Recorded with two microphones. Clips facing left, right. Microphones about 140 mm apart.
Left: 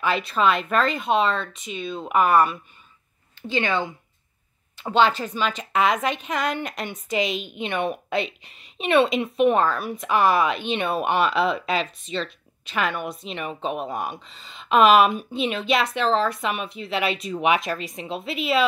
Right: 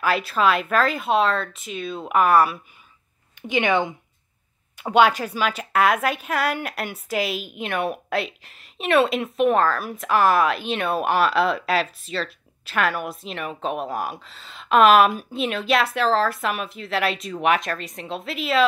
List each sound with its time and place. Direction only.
0.0 s a woman's voice: 5° right (ahead or behind)
3.4 s a woman's voice: 15° right (ahead or behind); by 18.6 s centre (ahead or behind)